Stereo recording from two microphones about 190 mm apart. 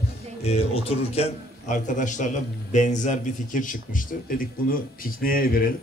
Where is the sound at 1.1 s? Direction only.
35° left (ahead or behind).